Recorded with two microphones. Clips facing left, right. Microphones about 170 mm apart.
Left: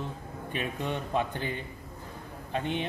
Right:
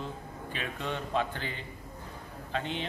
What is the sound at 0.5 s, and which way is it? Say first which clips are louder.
Speech: left 3 dB; 15° left (ahead or behind).